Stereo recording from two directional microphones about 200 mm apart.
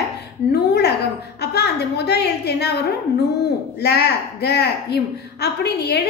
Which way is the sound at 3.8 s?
55° left (ahead or behind).